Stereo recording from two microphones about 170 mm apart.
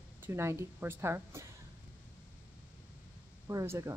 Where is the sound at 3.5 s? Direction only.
20° right (ahead or behind).